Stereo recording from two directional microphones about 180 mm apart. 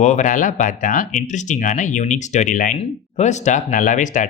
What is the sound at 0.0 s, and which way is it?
Speech, 40° left (ahead or behind).